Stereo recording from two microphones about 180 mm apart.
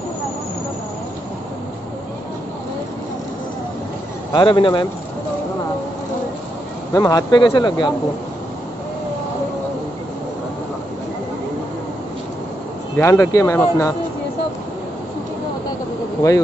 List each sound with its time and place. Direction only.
4.3 s speech: 25° left (ahead or behind)
6.9 s speech: 20° left (ahead or behind)
12.9 s speech: 15° left (ahead or behind)